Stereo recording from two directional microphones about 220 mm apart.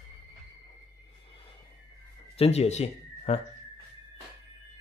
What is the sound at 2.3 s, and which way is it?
Speech, 25° left (ahead or behind).